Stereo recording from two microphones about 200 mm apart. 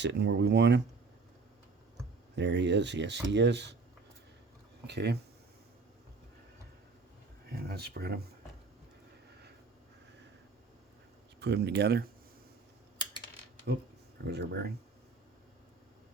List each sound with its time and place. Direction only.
0.0 s speech: 60° right (ahead or behind)
2.3 s speech: 60° right (ahead or behind)
4.9 s speech: 55° right (ahead or behind)
7.5 s speech: 50° right (ahead or behind)
11.3 s speech: 55° right (ahead or behind)
14.3 s speech: 55° right (ahead or behind)